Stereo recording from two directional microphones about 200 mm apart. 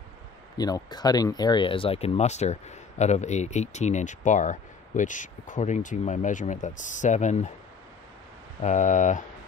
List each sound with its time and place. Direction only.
0.6 s speech: 20° left (ahead or behind); by 7.5 s 35° left (ahead or behind)
8.6 s speech: 40° left (ahead or behind)